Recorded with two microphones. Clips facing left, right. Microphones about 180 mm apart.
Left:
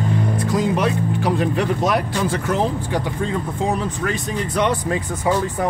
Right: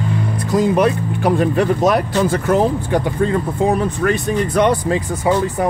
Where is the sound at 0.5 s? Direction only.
45° right (ahead or behind).